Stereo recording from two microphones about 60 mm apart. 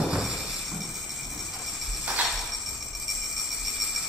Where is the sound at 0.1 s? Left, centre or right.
Centre.